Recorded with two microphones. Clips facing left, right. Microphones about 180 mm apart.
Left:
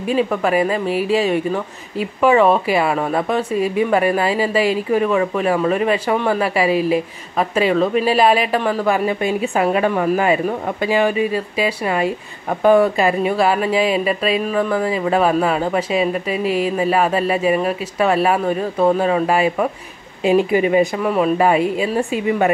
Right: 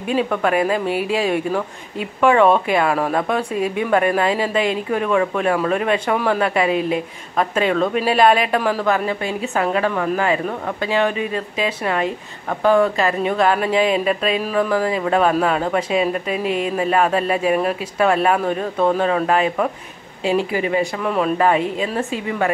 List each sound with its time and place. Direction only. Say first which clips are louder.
0.1 s speech: left 1 dB; centre (ahead or behind)
8.8 s a woman's voice: left 2 dB; 15° left (ahead or behind)
21.0 s a woman's voice: left 2 dB; 5° left (ahead or behind)